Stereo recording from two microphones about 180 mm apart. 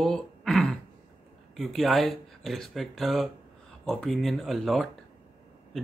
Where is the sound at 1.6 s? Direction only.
Centre (ahead or behind).